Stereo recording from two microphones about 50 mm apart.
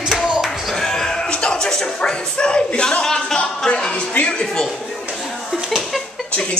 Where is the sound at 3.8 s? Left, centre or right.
Centre.